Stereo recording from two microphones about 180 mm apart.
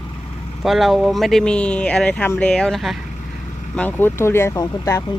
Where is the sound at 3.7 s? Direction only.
10° left (ahead or behind).